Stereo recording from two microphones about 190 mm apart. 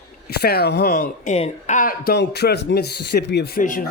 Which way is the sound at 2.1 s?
60° left (ahead or behind).